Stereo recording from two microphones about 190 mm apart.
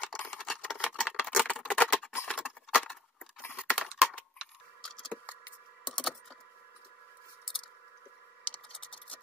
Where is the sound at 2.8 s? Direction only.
10° left (ahead or behind).